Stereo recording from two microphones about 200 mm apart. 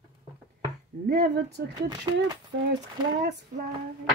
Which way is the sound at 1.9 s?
20° right (ahead or behind).